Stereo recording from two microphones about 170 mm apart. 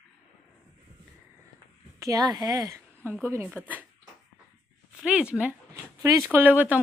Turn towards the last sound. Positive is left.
turn(degrees=-10)  # may be behind; listen again after turning